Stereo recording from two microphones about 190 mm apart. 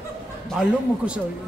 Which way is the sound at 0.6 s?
5° right (ahead or behind).